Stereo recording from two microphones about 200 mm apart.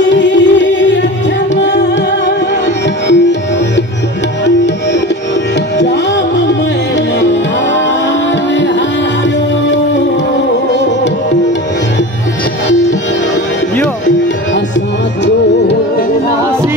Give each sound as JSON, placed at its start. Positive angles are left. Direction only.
{"t": 0.1, "sound": "music", "side_deg": 65}
{"t": 5.8, "sound": "music", "side_deg": 60}